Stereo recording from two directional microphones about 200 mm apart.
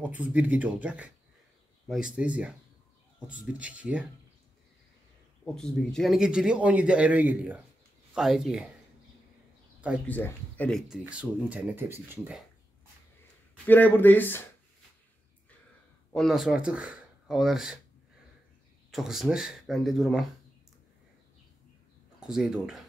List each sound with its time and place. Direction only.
0.0 s a man's voice: 10° right (ahead or behind)
3.5 s speech: 5° right (ahead or behind)
5.4 s a man's voice: 5° left (ahead or behind)
10.0 s speech: 10° left (ahead or behind)
10.9 s speech: 5° right (ahead or behind)
13.7 s speech: 10° left (ahead or behind)
16.1 s speech: centre (ahead or behind)
18.9 s a man's voice: centre (ahead or behind)
22.2 s a man's voice: 5° right (ahead or behind)